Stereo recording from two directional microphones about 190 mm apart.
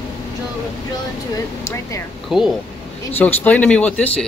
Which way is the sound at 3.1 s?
10° left (ahead or behind).